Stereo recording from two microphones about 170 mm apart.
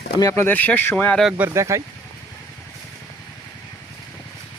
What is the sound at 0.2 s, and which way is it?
Speech, 15° left (ahead or behind).